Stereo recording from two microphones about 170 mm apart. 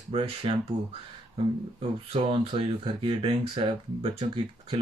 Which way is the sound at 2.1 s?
30° right (ahead or behind).